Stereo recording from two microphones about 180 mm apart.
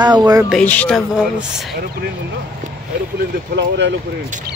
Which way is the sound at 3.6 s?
75° right (ahead or behind).